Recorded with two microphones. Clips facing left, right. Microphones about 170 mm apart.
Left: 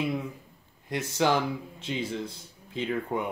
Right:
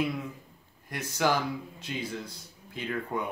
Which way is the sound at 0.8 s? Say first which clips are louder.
Left 2 dB; 25° left (ahead or behind).